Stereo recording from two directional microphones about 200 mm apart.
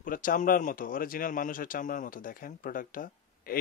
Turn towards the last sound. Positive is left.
turn(degrees=45)  # may be behind; listen again after turning